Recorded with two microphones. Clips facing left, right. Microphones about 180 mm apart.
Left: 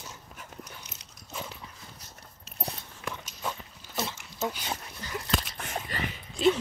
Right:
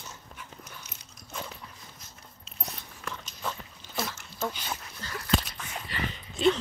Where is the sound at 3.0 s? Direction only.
10° left (ahead or behind).